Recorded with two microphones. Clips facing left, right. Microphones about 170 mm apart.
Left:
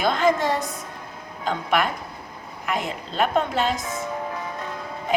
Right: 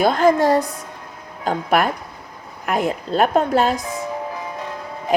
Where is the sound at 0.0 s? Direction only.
45° right (ahead or behind).